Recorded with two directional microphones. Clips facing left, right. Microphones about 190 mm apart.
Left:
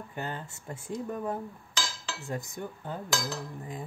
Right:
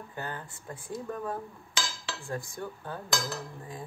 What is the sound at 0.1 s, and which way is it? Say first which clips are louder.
Speech: left 2 dB; 20° left (ahead or behind).